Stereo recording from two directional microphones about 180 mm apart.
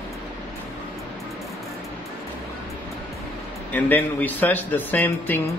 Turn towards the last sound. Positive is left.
turn(degrees=10)  # may be behind; listen again after turning